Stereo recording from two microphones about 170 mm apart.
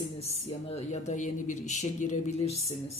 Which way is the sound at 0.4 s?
40° left (ahead or behind).